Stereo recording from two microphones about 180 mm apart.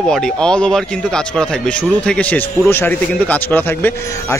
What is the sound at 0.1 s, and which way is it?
Speech, 5° left (ahead or behind).